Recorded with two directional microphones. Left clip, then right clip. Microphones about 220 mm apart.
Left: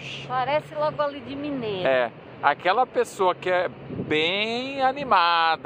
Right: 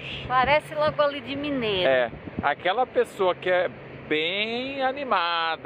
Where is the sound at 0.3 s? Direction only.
30° right (ahead or behind).